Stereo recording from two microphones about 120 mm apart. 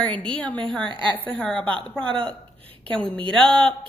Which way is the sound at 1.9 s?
5° left (ahead or behind).